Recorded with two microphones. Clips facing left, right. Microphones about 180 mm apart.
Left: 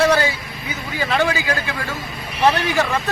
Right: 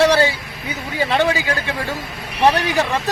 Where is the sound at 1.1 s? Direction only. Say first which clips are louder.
Right 1 dB; 25° right (ahead or behind).